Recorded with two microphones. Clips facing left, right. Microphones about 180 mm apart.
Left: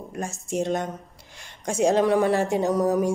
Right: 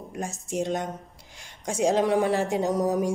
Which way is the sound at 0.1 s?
15° right (ahead or behind).